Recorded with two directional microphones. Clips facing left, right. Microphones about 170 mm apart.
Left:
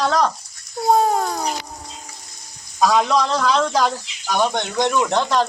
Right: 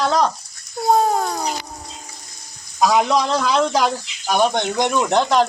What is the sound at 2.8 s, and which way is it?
Speech, 10° right (ahead or behind).